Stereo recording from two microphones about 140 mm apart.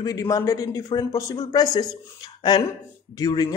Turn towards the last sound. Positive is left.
turn(degrees=25)  # may be behind; listen again after turning